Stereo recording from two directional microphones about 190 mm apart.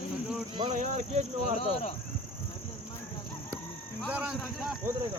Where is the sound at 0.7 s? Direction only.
40° right (ahead or behind).